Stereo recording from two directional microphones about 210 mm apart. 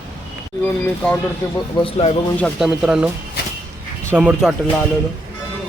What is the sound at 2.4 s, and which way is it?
Speech, 5° right (ahead or behind).